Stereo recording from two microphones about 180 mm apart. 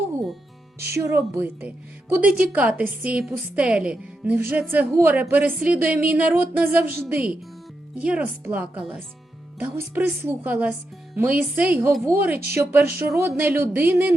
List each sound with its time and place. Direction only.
0.9 s a woman's voice: 15° right (ahead or behind)